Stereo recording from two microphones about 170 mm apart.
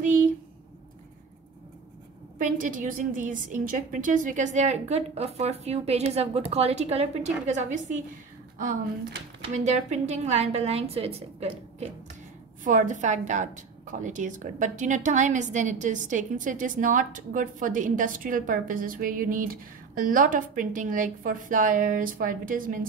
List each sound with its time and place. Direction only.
2.3 s a woman's voice: 50° right (ahead or behind)
9.5 s a woman's voice: 45° right (ahead or behind)
12.6 s a woman's voice: 50° right (ahead or behind)